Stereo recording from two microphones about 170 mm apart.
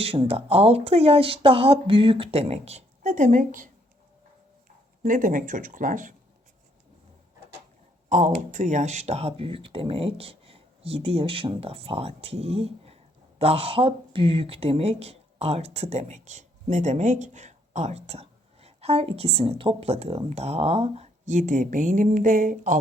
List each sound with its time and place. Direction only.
0.0 s speech: 35° right (ahead or behind)
5.0 s speech: 50° right (ahead or behind)
8.1 s speech: 45° right (ahead or behind)